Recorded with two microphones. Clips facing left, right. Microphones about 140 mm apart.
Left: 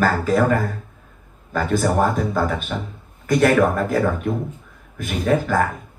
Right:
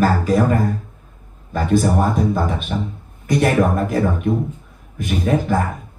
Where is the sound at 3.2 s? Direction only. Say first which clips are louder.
Left 1 dB; 45° left (ahead or behind).